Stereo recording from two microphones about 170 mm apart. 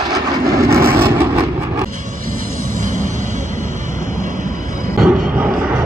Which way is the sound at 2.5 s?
50° right (ahead or behind).